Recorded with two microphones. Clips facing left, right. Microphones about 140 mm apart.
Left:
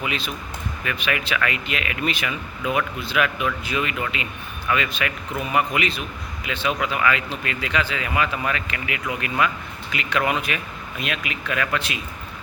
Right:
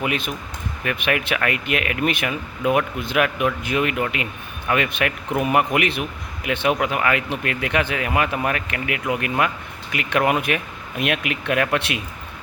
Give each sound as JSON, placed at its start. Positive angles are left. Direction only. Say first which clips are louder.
{"t": 0.0, "sound": "speech", "louder": "right 4 dB", "side_deg": -55}